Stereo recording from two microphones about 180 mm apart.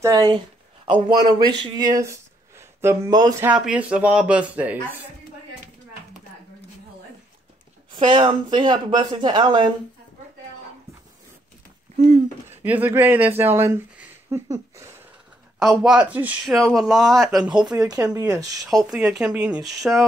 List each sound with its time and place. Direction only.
0.0 s speech: 25° right (ahead or behind); by 4.7 s 5° right (ahead or behind)
7.9 s speech: 30° right (ahead or behind)
12.4 s speech: 10° right (ahead or behind)
15.6 s speech: 5° right (ahead or behind)
17.6 s speech: 20° right (ahead or behind)
18.9 s speech: 5° right (ahead or behind)